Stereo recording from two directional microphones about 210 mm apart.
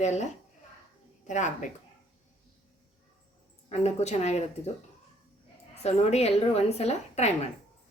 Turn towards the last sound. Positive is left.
turn(degrees=30)  # may be behind; listen again after turning